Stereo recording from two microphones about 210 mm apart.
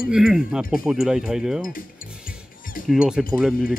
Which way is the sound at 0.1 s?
5° right (ahead or behind).